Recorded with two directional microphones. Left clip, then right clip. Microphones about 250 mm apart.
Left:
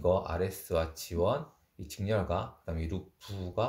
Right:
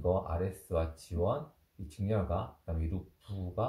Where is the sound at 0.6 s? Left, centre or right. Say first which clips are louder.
Left 3 dB; left.